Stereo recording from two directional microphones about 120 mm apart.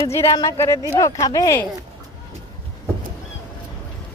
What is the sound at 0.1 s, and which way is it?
Speech, 20° left (ahead or behind).